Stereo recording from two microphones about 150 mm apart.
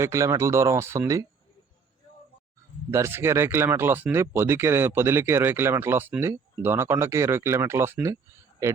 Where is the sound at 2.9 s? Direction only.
15° right (ahead or behind).